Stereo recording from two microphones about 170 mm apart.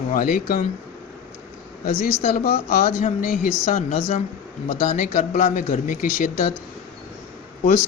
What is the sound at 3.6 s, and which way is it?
Speech, 40° left (ahead or behind).